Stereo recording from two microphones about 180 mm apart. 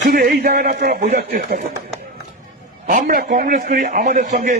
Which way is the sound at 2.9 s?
50° right (ahead or behind).